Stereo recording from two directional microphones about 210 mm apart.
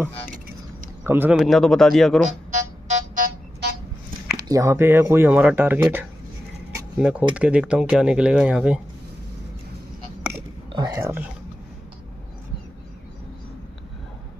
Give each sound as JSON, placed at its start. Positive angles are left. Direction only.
{"t": 1.0, "sound": "a man's voice", "side_deg": -10}
{"t": 1.3, "sound": "speech", "side_deg": 0}
{"t": 2.5, "sound": "music", "side_deg": -40}
{"t": 4.5, "sound": "speech", "side_deg": -15}
{"t": 10.7, "sound": "speech", "side_deg": -20}